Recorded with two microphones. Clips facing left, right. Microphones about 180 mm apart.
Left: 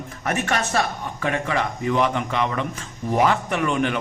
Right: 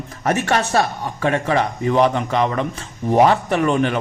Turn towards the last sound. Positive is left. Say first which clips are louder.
# right 4 dB
turn(degrees=-40)  # may be behind; listen again after turning